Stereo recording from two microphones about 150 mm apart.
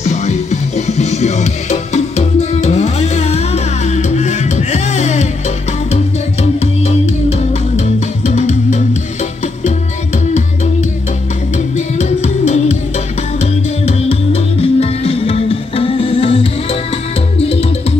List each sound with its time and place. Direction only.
0.0 s music: 50° left (ahead or behind)
6.6 s music: 45° left (ahead or behind)
11.5 s music: 50° left (ahead or behind)